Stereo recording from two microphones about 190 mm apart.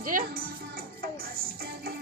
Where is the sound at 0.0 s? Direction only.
45° right (ahead or behind).